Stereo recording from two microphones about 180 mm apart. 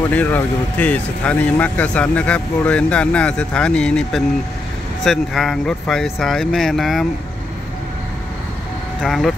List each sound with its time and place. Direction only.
0.1 s speech: 10° left (ahead or behind)
9.0 s speech: centre (ahead or behind)